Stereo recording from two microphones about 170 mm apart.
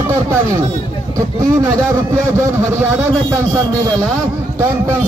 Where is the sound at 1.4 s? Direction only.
15° right (ahead or behind).